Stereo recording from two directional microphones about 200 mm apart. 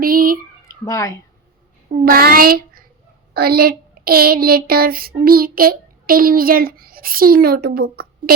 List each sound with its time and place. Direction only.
0.0 s a sound: 45° right (ahead or behind)
0.7 s speech: 15° left (ahead or behind)
1.9 s a child's voice: 50° right (ahead or behind)